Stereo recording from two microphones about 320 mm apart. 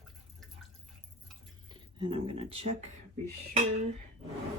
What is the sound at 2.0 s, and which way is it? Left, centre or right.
Speech, centre.